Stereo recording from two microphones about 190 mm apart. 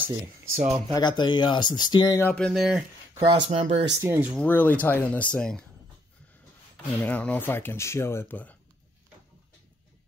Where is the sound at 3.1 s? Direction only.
25° right (ahead or behind).